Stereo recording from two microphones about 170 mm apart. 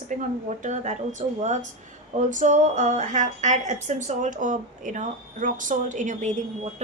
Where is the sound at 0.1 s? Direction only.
45° right (ahead or behind).